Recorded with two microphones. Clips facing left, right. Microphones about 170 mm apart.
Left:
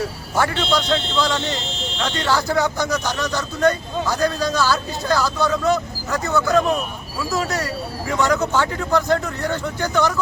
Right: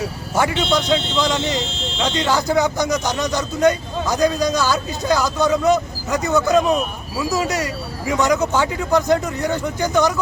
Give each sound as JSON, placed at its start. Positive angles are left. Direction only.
{"t": 0.3, "sound": "speech", "side_deg": -15}